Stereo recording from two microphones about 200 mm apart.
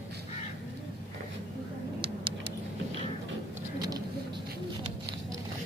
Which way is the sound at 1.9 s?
25° right (ahead or behind).